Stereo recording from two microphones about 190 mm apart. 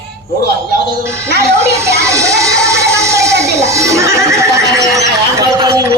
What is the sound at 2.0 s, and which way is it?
Music, 15° right (ahead or behind).